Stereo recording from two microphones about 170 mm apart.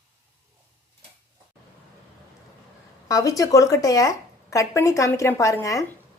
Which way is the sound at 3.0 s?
20° left (ahead or behind).